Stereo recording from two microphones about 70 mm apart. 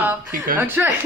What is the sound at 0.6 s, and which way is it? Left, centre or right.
Speech, right.